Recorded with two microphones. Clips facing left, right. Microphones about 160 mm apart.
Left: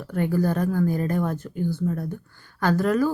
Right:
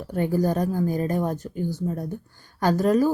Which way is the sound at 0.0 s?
20° right (ahead or behind).